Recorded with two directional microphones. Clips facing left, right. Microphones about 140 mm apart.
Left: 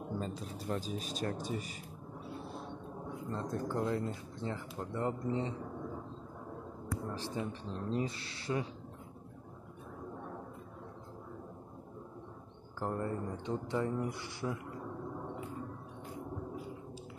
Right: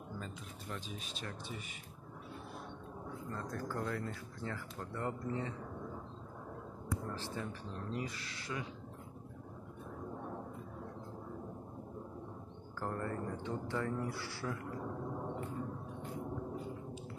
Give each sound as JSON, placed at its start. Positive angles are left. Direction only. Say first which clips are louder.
{"t": 0.1, "sound": "speech", "louder": "left 7 dB", "side_deg": 35}
{"t": 3.1, "sound": "speech", "louder": "left 4 dB", "side_deg": 25}
{"t": 7.1, "sound": "speech", "louder": "left 3 dB", "side_deg": 15}
{"t": 12.8, "sound": "speech", "louder": "left 3 dB", "side_deg": 20}
{"t": 15.2, "sound": "a sound", "louder": "right 1 dB", "side_deg": 0}